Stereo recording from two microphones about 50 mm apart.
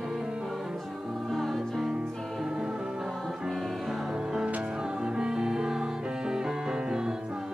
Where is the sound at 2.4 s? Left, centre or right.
Centre.